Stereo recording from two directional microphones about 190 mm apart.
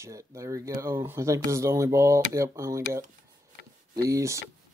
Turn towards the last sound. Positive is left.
turn(degrees=-15)  # may be behind; listen again after turning